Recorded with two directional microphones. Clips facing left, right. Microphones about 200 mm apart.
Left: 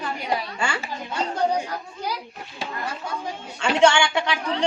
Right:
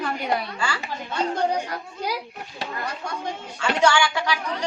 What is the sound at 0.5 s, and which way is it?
Speech, 25° left (ahead or behind).